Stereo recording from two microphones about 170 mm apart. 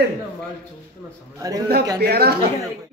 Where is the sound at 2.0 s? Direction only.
70° right (ahead or behind).